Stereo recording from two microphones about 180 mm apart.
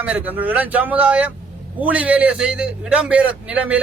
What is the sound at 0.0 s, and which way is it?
A man's voice, 10° right (ahead or behind).